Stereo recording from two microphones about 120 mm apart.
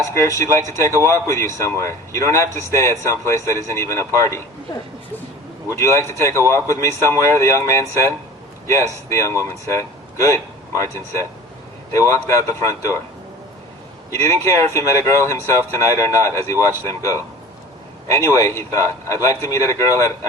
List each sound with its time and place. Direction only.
0.1 s speech: 25° left (ahead or behind)
14.1 s speech: 25° left (ahead or behind)
18.3 s speech: 25° left (ahead or behind)